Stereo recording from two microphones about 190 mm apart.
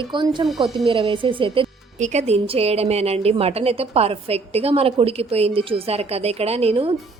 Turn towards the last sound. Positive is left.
turn(degrees=-30)  # may be behind; listen again after turning